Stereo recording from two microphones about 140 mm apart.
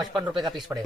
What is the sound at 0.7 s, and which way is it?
Speech, 15° right (ahead or behind).